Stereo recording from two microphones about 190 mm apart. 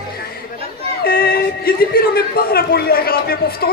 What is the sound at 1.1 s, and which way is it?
Speech, 50° left (ahead or behind).